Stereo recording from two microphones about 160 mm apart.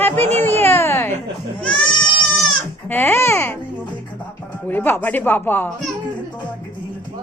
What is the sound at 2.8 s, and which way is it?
Speech, 15° left (ahead or behind).